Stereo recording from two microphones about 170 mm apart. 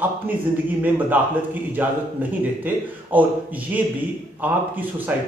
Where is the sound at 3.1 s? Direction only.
10° right (ahead or behind).